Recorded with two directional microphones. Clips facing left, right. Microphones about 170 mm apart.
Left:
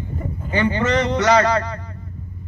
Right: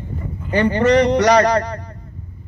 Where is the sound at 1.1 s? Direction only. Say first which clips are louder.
Right 3 dB; 15° right (ahead or behind).